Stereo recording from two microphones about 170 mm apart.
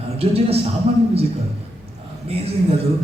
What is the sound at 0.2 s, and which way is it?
Speech, 35° right (ahead or behind).